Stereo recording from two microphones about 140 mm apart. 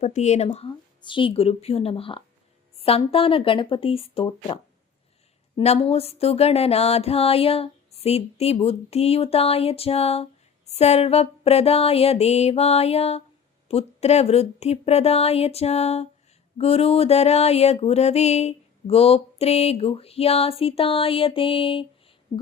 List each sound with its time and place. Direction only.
0.0 s music: 55° left (ahead or behind)
1.0 s music: 35° left (ahead or behind)
3.0 s speech: 40° left (ahead or behind)
5.5 s music: 45° left (ahead or behind)